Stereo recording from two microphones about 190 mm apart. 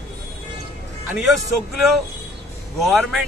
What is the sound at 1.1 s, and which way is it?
Speech, centre (ahead or behind).